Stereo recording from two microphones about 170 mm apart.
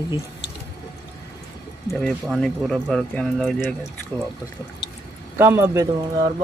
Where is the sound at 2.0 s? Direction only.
Centre (ahead or behind).